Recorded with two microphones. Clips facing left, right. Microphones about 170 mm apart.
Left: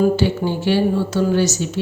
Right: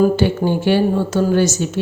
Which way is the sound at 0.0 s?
50° right (ahead or behind).